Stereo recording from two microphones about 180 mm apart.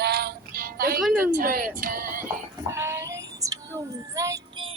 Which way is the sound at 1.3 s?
50° right (ahead or behind).